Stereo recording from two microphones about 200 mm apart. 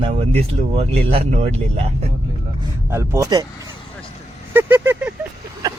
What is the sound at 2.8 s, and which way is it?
Speech, 15° right (ahead or behind).